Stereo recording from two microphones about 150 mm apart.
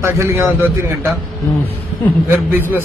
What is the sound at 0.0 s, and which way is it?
Speech, 20° right (ahead or behind).